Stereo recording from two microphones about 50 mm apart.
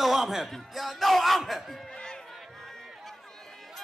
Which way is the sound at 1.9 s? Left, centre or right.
Centre.